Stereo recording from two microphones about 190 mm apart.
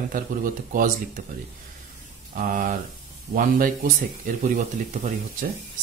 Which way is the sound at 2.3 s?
45° right (ahead or behind).